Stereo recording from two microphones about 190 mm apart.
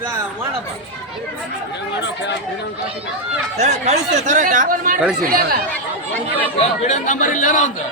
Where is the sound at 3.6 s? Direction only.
35° right (ahead or behind).